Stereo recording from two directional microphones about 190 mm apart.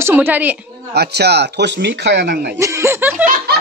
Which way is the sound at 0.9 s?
60° right (ahead or behind).